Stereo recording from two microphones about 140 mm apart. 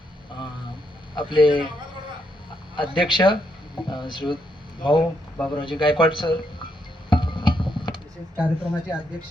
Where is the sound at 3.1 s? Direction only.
35° left (ahead or behind).